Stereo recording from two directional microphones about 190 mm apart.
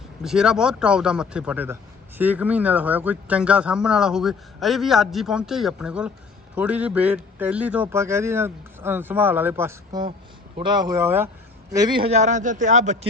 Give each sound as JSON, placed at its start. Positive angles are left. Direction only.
{"t": 0.2, "sound": "a man's voice", "side_deg": -5}